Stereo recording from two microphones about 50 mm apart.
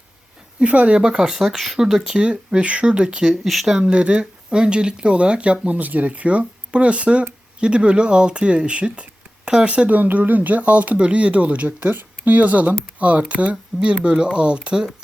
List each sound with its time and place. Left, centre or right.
0.6 s speech: right
0.9 s speech: centre
2.1 s speech: centre
3.4 s speech: centre
3.8 s speech: right
9.4 s a sound: centre
9.6 s speech: right